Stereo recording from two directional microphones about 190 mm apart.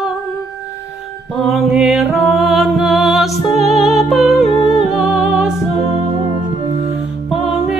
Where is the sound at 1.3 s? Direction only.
Centre (ahead or behind).